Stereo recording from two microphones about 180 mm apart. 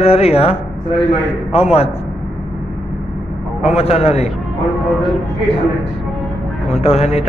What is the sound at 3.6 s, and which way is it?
Speech, 35° left (ahead or behind).